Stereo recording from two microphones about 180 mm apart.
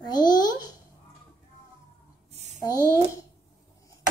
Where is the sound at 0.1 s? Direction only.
20° left (ahead or behind).